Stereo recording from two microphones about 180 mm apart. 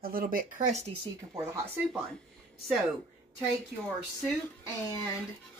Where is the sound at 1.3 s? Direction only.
15° right (ahead or behind).